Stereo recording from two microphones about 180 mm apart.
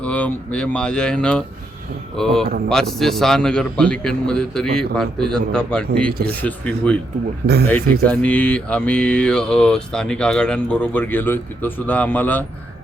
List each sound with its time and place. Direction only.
0.0 s a man's voice: 5° left (ahead or behind)
6.2 s mantra: 10° left (ahead or behind)
7.4 s speech: 60° right (ahead or behind)
8.0 s mantra: 5° left (ahead or behind)